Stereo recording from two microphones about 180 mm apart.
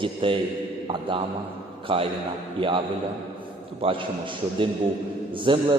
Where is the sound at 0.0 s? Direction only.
30° right (ahead or behind).